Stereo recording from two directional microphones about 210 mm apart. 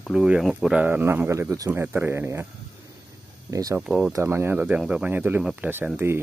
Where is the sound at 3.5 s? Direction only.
15° right (ahead or behind).